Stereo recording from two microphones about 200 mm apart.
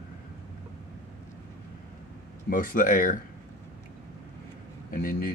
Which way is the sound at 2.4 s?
45° left (ahead or behind).